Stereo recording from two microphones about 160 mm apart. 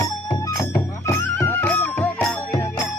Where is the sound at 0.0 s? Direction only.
20° left (ahead or behind).